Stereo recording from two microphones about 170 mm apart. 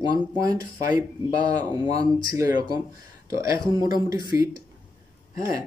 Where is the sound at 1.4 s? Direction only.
25° right (ahead or behind).